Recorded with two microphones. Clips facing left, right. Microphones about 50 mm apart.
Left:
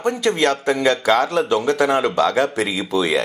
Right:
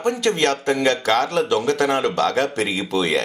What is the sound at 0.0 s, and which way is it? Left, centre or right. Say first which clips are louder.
A man's voice: left 1 dB; centre.